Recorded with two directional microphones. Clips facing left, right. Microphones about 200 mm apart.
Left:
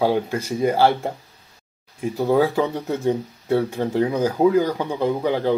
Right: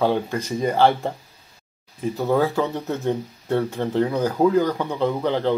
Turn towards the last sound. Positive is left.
turn(degrees=10)  # may be behind; listen again after turning